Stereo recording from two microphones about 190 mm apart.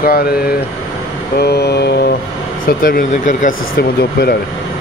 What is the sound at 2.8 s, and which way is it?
Speech, 50° left (ahead or behind).